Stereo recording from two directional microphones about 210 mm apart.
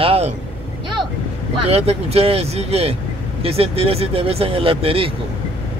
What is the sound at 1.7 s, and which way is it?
Speech, 30° right (ahead or behind).